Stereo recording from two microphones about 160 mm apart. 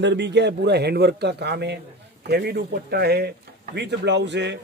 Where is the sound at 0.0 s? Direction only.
90° right.